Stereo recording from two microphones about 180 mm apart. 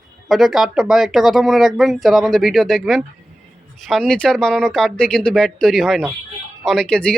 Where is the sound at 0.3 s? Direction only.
Centre (ahead or behind).